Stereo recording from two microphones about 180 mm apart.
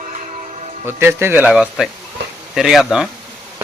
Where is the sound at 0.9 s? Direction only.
15° right (ahead or behind).